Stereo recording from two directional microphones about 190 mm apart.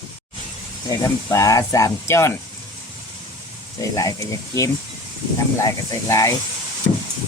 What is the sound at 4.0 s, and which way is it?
Speech, 15° left (ahead or behind).